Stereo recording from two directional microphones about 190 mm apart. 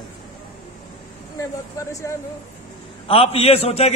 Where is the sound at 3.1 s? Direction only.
30° left (ahead or behind).